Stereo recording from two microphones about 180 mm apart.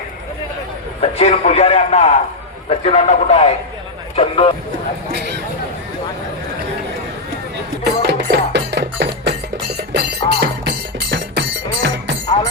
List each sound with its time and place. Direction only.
1.0 s a man's voice: 35° left (ahead or behind)
8.0 s music: 70° right (ahead or behind)